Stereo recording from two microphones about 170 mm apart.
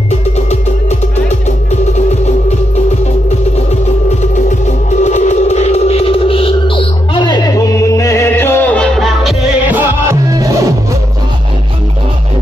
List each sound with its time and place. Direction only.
4.2 s music: 45° left (ahead or behind); by 10.7 s 20° right (ahead or behind)